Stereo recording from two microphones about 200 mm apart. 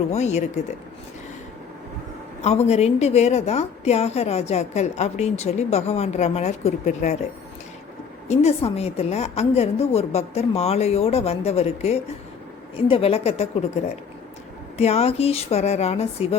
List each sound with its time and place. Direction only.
0.1 s a woman's voice: 35° left (ahead or behind)
2.4 s a woman's voice: 35° left (ahead or behind)
8.3 s a woman's voice: 30° left (ahead or behind)
14.8 s a woman's voice: 30° left (ahead or behind)